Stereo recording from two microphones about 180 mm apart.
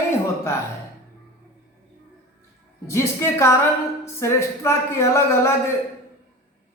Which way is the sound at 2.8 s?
15° left (ahead or behind).